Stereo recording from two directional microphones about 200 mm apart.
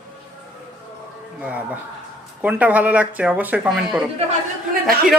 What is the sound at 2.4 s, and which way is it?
Speech, 5° right (ahead or behind).